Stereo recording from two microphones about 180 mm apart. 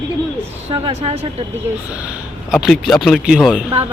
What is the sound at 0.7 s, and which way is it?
Speech, 30° right (ahead or behind).